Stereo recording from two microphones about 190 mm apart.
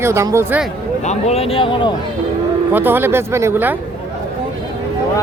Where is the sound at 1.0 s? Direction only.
35° left (ahead or behind).